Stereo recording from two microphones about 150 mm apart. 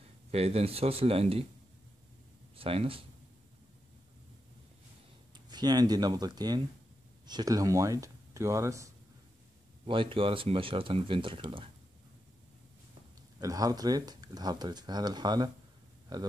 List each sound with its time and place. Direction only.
0.3 s speech: 45° right (ahead or behind)
2.5 s speech: 40° right (ahead or behind)
5.3 s speech: 30° right (ahead or behind)
9.8 s speech: 35° right (ahead or behind)
13.4 s speech: 25° right (ahead or behind)